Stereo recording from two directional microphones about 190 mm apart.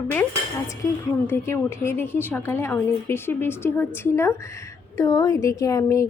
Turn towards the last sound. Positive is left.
turn(degrees=15)  # may be behind; listen again after turning